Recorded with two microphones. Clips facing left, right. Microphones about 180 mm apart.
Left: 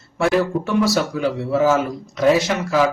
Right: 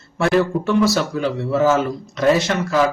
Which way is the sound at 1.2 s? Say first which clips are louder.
Right 1 dB; 10° left (ahead or behind).